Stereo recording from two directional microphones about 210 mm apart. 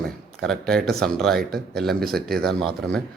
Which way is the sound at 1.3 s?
45° right (ahead or behind).